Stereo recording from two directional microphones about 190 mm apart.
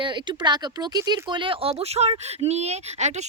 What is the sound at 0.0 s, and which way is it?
Speech, 25° right (ahead or behind).